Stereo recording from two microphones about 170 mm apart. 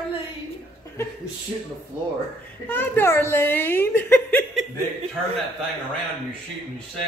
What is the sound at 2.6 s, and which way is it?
A woman's voice, 10° left (ahead or behind).